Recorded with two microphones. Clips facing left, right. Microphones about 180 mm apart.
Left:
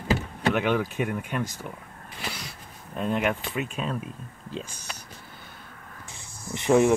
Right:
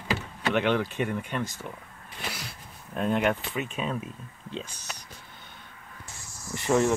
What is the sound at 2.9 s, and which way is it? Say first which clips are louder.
Speech: right 1 dB; centre (ahead or behind).